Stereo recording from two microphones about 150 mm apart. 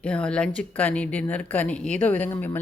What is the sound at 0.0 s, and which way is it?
Speech, 5° left (ahead or behind).